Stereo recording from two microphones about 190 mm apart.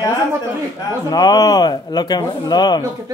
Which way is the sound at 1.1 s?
20° left (ahead or behind).